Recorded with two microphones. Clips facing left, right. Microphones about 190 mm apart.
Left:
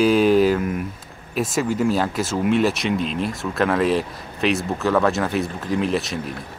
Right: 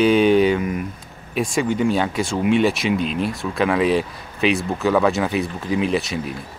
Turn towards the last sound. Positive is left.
turn(degrees=0)  # may be behind; listen again after turning